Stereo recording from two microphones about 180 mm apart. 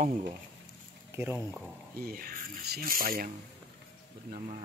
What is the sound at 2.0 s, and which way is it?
Speech, 55° right (ahead or behind).